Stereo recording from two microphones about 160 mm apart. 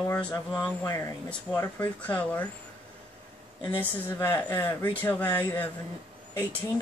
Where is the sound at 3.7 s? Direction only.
10° left (ahead or behind).